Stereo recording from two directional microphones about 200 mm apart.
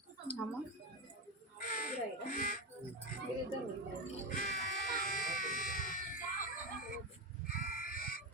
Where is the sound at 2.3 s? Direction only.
40° left (ahead or behind).